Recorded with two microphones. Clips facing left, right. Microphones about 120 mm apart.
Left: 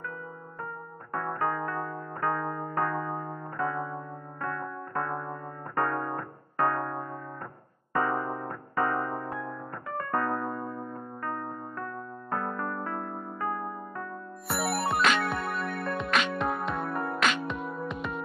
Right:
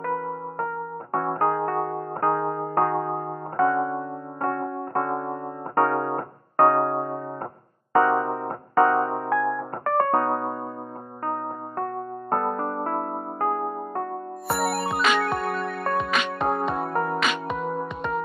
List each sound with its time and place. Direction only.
0.0 s music: 60° right (ahead or behind); by 7.2 s 40° right (ahead or behind)
7.9 s keyboard: 50° right (ahead or behind)
9.3 s keyboard: 65° right (ahead or behind)
10.1 s electric piano: 40° right (ahead or behind)
11.2 s music: 45° right (ahead or behind)
14.6 s music: centre (ahead or behind)
16.3 s music: 35° right (ahead or behind)
16.7 s music: 45° right (ahead or behind)
17.2 s music: centre (ahead or behind)